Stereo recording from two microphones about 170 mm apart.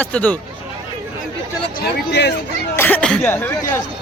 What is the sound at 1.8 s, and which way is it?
Speech, 85° left.